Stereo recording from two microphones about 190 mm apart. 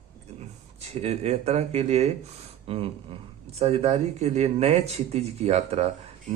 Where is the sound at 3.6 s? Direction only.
35° right (ahead or behind).